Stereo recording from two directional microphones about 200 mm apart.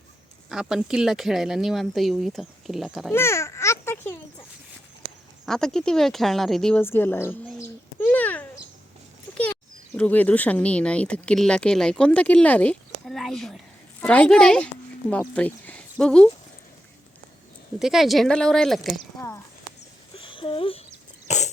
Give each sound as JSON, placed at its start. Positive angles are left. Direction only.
{"t": 0.5, "sound": "speech", "side_deg": -5}
{"t": 3.1, "sound": "speech", "side_deg": 15}
{"t": 5.5, "sound": "speech", "side_deg": 5}
{"t": 10.0, "sound": "speech", "side_deg": 10}
{"t": 17.7, "sound": "speech", "side_deg": 0}
{"t": 20.1, "sound": "a sound", "side_deg": 25}
{"t": 21.2, "sound": "cough", "side_deg": 35}